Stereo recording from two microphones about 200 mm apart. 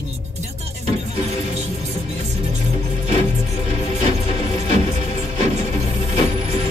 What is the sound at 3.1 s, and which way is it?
Music, 35° right (ahead or behind).